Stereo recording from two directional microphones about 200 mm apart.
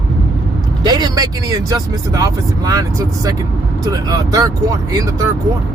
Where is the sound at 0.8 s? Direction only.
20° right (ahead or behind).